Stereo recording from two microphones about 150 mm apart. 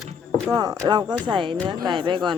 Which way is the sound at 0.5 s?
25° right (ahead or behind).